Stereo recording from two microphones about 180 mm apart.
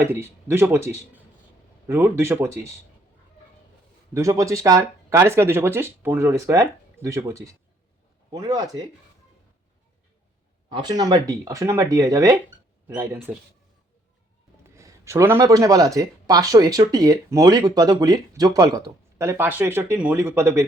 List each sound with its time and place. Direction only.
0.0 s speech: 15° right (ahead or behind)
1.9 s speech: 15° right (ahead or behind)
4.1 s speech: 15° right (ahead or behind)
10.7 s speech: 25° right (ahead or behind)
13.3 s speech: 10° right (ahead or behind)
14.8 s speech: 15° right (ahead or behind)